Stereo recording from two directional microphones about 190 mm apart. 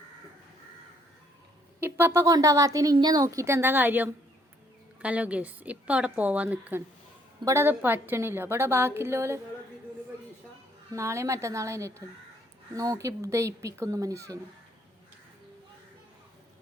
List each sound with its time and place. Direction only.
1.8 s speech: 10° right (ahead or behind)
10.9 s speech: 15° right (ahead or behind)